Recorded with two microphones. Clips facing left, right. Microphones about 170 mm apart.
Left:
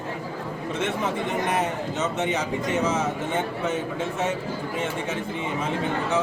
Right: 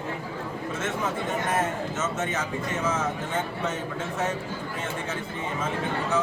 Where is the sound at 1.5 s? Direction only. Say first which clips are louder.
Left 1 dB; 15° left (ahead or behind).